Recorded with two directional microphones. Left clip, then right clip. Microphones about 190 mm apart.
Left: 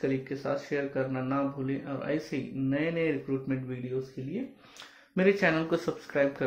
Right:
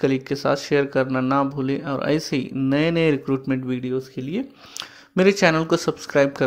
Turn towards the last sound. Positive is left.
turn(degrees=-25)  # may be behind; listen again after turning